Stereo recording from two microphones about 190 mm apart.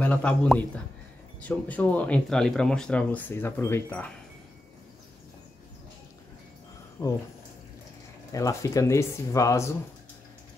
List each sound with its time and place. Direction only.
0.0 s speech: 5° left (ahead or behind)
7.0 s speech: 20° left (ahead or behind)
8.3 s speech: 15° left (ahead or behind)